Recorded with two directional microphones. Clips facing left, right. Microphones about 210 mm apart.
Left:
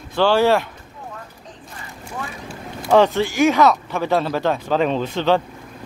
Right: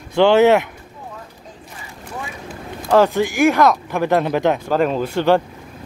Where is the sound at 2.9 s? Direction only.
10° right (ahead or behind).